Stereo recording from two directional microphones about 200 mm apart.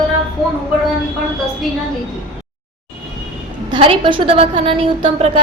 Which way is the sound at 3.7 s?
25° right (ahead or behind).